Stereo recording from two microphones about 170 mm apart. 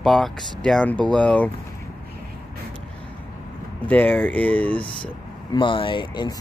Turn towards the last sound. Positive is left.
turn(degrees=25)  # may be behind; listen again after turning